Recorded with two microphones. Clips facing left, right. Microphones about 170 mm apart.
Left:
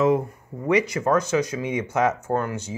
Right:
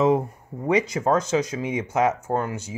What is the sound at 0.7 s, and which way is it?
Speech, 20° right (ahead or behind).